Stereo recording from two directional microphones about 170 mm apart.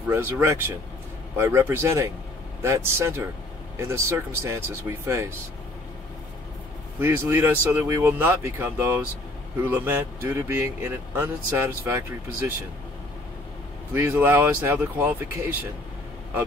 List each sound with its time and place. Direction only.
0.1 s speech: 15° right (ahead or behind)
7.0 s speech: 15° right (ahead or behind)
13.9 s speech: 15° right (ahead or behind)